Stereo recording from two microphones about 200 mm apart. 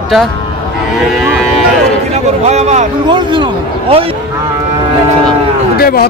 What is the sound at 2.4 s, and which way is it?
Speech, 35° right (ahead or behind).